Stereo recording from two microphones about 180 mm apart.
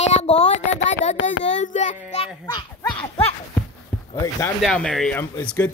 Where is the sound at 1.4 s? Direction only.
40° left (ahead or behind).